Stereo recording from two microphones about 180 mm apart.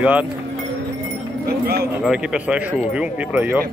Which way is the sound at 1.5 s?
60° right (ahead or behind).